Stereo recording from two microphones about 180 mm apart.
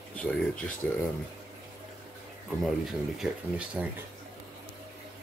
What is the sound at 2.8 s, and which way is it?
Speech, 5° right (ahead or behind).